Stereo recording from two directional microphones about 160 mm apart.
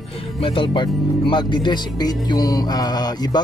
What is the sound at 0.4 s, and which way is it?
Speech, 35° left (ahead or behind).